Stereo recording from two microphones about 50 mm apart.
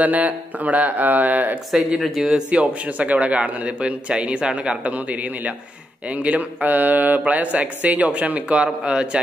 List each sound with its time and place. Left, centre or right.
0.0 s speech: right
2.0 s speech: centre
2.3 s a man's voice: right